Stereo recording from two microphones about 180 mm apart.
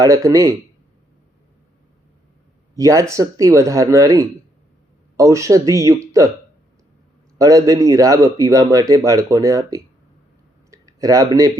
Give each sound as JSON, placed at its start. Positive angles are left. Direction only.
{"t": 0.0, "sound": "speech", "side_deg": -20}
{"t": 2.7, "sound": "speech", "side_deg": -20}
{"t": 7.3, "sound": "speech", "side_deg": -20}